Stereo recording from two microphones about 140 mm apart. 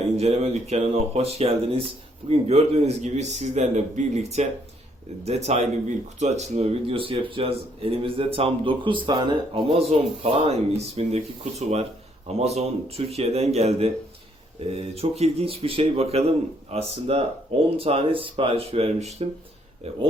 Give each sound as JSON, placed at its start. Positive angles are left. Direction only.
{"t": 0.2, "sound": "speech", "side_deg": -50}
{"t": 14.9, "sound": "speech", "side_deg": -45}